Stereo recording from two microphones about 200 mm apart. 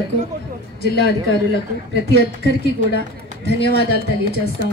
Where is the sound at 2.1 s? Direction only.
55° left (ahead or behind).